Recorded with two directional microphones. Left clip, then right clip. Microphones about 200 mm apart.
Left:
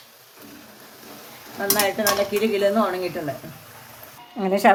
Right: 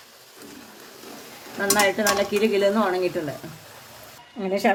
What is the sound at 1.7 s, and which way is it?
Dishes, 35° right (ahead or behind).